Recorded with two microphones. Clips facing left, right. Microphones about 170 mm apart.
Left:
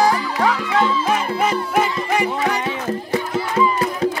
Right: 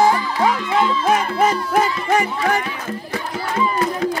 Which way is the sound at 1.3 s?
40° right (ahead or behind).